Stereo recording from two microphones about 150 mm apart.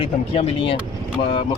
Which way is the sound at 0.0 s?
35° left (ahead or behind).